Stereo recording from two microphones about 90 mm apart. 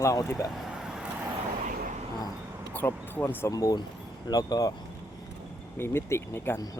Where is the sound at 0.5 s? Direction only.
5° right (ahead or behind).